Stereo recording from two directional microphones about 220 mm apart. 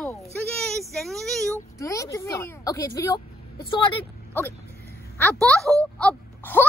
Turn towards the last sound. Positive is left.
turn(degrees=5)  # may be behind; listen again after turning